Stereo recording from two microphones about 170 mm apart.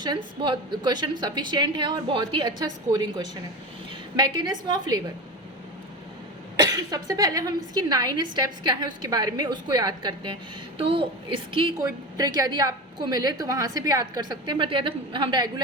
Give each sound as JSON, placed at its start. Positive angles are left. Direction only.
{"t": 0.0, "sound": "a woman's voice", "side_deg": -25}
{"t": 6.6, "sound": "a woman's voice", "side_deg": -20}